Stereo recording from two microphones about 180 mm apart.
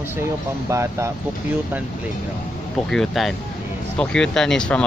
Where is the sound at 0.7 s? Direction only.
15° right (ahead or behind).